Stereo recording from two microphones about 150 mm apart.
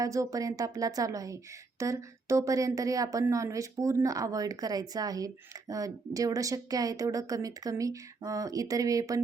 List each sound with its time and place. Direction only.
0.0 s a woman's voice: 20° right (ahead or behind)